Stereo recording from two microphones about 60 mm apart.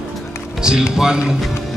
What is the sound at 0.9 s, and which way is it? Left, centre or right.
Mantra, centre.